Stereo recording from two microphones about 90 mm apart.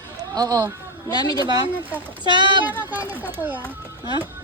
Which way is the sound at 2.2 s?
55° right (ahead or behind).